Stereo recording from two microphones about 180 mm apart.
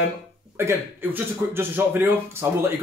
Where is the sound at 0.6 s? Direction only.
15° right (ahead or behind).